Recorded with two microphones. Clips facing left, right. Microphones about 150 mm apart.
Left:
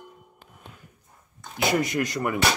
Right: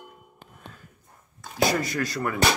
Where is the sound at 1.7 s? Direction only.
20° left (ahead or behind).